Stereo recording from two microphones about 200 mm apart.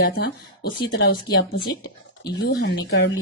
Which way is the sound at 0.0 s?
55° left (ahead or behind).